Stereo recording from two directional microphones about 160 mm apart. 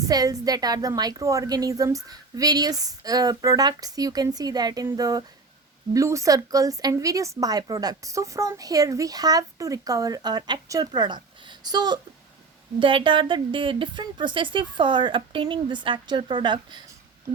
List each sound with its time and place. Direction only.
0.1 s a woman's voice: 25° right (ahead or behind)